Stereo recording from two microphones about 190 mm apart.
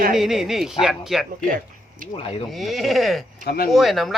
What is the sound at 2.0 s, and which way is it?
Speech, 45° right (ahead or behind).